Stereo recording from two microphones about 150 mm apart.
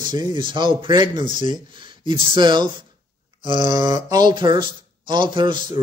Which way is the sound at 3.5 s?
55° left (ahead or behind).